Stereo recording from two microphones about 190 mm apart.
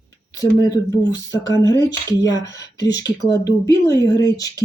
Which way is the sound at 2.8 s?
20° left (ahead or behind).